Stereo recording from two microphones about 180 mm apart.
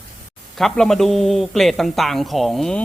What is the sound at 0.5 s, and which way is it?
A man's voice, centre (ahead or behind).